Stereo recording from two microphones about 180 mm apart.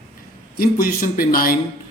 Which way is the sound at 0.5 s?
55° left (ahead or behind).